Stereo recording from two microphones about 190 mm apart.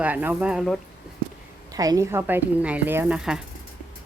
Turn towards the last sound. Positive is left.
turn(degrees=-5)  # may be behind; listen again after turning